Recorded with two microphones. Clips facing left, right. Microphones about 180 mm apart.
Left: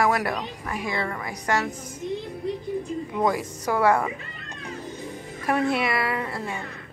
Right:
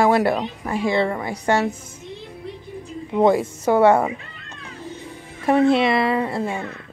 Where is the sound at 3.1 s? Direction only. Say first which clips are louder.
Right 9 dB; 25° right (ahead or behind).